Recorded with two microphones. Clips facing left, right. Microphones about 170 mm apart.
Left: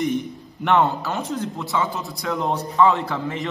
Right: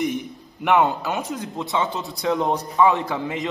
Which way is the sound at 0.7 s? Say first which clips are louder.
Even; 15° right (ahead or behind).